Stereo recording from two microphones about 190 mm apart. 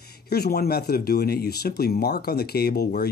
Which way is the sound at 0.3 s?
55° left (ahead or behind).